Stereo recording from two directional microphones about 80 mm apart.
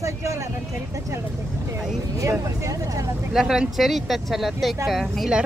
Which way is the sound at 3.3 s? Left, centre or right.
Centre.